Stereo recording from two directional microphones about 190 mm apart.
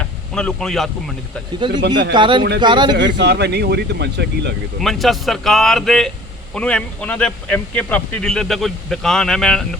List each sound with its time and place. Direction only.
0.3 s a man's voice: 5° left (ahead or behind)
1.5 s speech: 25° right (ahead or behind)
3.0 s speech: 65° right (ahead or behind)
4.8 s a man's voice: centre (ahead or behind)